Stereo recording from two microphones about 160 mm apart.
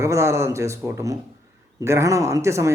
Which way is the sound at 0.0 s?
20° right (ahead or behind).